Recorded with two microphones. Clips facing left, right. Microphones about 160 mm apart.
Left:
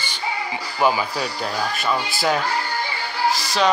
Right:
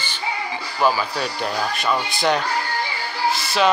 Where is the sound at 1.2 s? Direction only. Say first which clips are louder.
Right 1 dB; centre (ahead or behind).